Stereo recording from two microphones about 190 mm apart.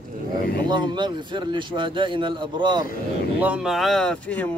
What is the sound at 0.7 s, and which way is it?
Speech, 25° right (ahead or behind).